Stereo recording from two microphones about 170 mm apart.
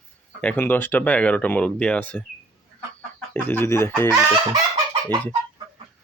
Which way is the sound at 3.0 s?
10° left (ahead or behind).